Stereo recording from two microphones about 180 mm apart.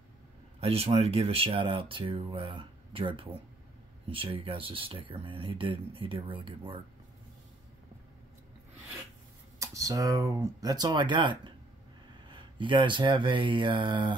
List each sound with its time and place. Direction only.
0.6 s speech: 35° right (ahead or behind)
9.6 s speech: 20° right (ahead or behind)